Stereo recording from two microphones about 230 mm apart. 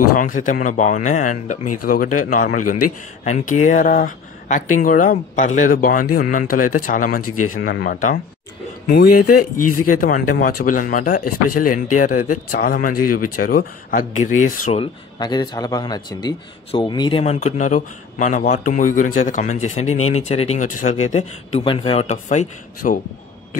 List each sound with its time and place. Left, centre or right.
0.2 s speech: left
9.4 s speech: left
9.8 s speech: left